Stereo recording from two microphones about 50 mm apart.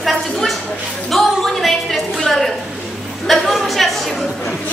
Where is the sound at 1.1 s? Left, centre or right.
Centre.